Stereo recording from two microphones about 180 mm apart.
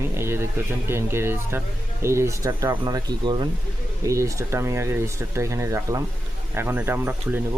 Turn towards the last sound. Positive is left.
turn(degrees=-10)  # may be behind; listen again after turning